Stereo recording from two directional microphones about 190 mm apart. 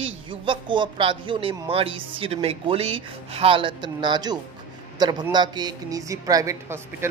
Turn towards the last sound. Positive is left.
turn(degrees=-15)  # may be behind; listen again after turning